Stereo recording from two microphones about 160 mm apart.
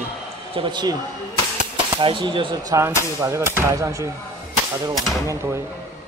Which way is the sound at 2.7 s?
20° right (ahead or behind).